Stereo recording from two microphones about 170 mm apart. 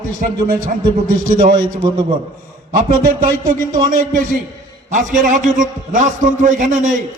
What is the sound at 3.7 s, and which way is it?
A man's voice, 55° right (ahead or behind).